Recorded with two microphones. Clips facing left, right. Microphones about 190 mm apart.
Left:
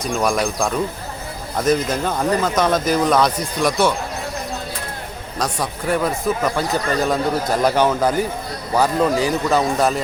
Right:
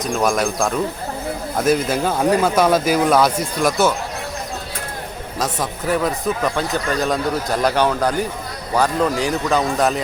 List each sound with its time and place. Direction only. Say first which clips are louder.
0.0 s speech: right 1 dB; centre (ahead or behind)
5.4 s speech: even; centre (ahead or behind)